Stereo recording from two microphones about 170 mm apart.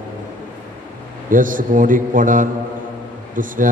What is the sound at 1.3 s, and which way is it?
A man's voice, 50° right (ahead or behind).